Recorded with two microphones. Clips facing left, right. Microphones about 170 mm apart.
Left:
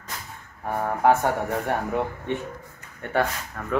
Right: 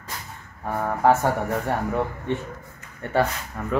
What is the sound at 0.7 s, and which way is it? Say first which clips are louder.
Speech: right 1 dB; centre (ahead or behind).